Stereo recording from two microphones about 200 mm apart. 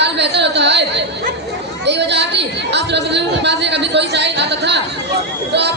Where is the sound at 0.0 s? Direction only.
60° right (ahead or behind).